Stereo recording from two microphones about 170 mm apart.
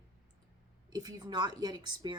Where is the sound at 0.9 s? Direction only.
25° right (ahead or behind).